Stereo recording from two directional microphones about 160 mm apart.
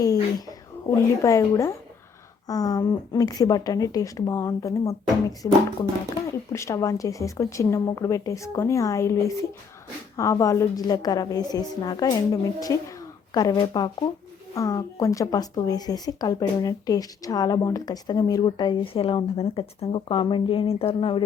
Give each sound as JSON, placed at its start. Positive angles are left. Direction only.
{"t": 0.0, "sound": "speech", "side_deg": 20}